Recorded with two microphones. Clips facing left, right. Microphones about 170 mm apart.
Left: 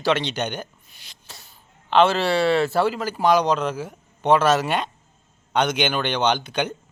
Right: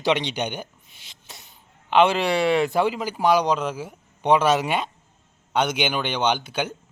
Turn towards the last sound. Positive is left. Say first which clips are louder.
# left 2 dB
turn(degrees=-5)  # may be behind; listen again after turning